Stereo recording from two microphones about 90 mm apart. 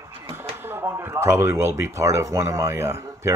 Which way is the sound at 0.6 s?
25° right (ahead or behind).